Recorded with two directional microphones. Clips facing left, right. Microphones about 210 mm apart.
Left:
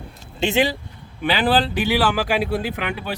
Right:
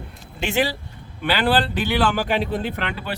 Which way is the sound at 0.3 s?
20° left (ahead or behind).